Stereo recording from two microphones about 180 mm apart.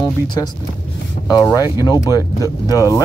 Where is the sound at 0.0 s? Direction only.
25° left (ahead or behind).